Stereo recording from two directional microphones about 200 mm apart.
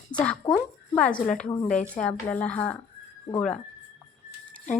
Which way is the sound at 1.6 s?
40° left (ahead or behind).